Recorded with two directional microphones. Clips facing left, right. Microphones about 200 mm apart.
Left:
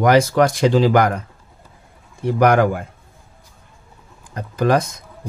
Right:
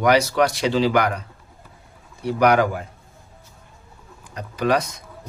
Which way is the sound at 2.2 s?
50° left (ahead or behind).